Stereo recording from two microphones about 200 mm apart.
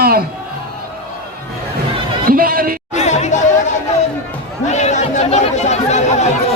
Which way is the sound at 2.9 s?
35° left (ahead or behind).